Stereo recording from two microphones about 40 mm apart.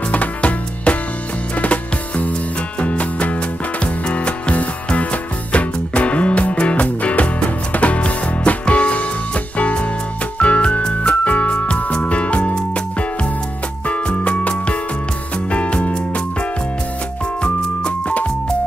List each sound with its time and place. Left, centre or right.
0.1 s music: left
15.5 s music: left
17.4 s music: left